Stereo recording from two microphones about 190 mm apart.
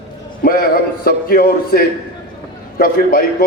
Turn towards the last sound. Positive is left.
turn(degrees=50)  # may be behind; listen again after turning